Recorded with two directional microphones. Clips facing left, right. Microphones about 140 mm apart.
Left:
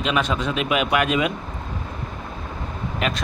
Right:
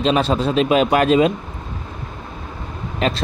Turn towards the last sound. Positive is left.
turn(degrees=-30)  # may be behind; listen again after turning